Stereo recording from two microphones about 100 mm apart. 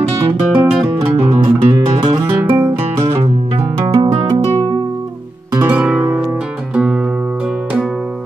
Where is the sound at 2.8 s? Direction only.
90° right.